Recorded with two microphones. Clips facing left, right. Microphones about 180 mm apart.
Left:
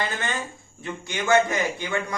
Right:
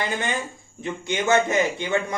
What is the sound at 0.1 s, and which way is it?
A man's voice, 15° right (ahead or behind).